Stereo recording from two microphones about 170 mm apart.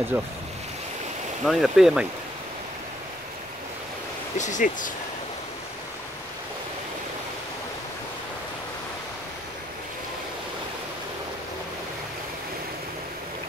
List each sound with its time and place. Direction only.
0.1 s speech: 15° right (ahead or behind)
1.4 s speech: centre (ahead or behind)
4.4 s speech: 45° left (ahead or behind)